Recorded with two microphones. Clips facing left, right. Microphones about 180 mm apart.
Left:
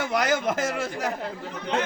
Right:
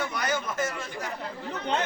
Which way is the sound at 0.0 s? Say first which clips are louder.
Left 6 dB; 90° left.